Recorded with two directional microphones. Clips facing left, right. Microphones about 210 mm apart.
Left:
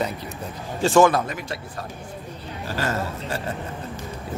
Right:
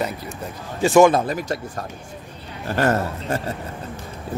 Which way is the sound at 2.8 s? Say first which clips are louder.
Right 7 dB; 55° right (ahead or behind).